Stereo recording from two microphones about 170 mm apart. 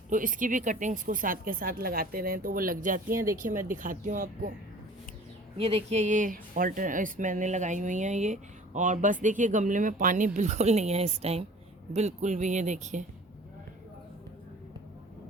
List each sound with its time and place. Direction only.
0.1 s speech: 50° right (ahead or behind)
5.5 s speech: 35° right (ahead or behind)